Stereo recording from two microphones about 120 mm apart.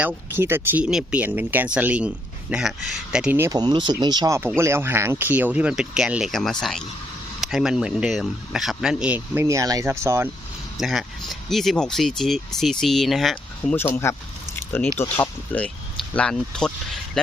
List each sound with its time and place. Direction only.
0.0 s speech: 20° right (ahead or behind)
3.5 s speech: 40° right (ahead or behind)
4.4 s speech: 20° right (ahead or behind)
10.8 s speech: centre (ahead or behind)
13.7 s speech: 20° left (ahead or behind)